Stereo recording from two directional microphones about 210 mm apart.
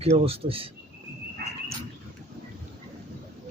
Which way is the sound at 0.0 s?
30° right (ahead or behind).